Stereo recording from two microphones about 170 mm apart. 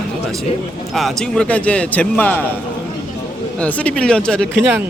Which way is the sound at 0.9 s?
Centre (ahead or behind).